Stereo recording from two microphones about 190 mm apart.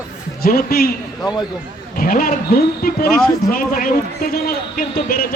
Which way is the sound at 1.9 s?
50° left (ahead or behind).